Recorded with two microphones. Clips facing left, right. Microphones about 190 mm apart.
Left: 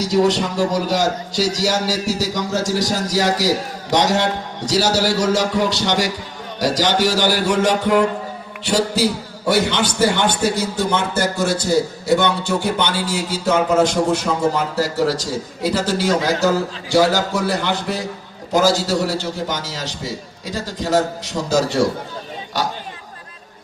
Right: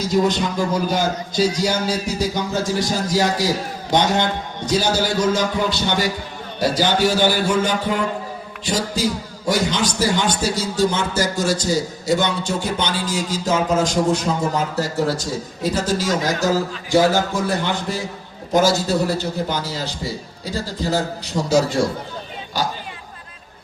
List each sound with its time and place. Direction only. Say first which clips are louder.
0.0 s a man's voice: left 2 dB; 75° left (ahead or behind)
18.8 s a man's voice: even; 85° left